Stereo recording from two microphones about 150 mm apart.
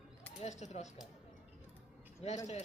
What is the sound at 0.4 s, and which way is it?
Speech, 50° left (ahead or behind).